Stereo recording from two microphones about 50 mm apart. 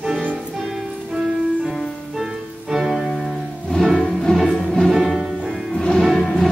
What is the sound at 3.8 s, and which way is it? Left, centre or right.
Music, centre.